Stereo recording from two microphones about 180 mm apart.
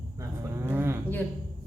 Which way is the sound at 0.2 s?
15° right (ahead or behind).